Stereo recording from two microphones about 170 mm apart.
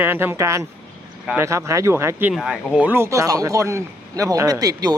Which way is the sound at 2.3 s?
Centre (ahead or behind).